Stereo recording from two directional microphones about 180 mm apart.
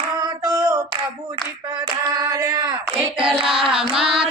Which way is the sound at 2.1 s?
20° right (ahead or behind).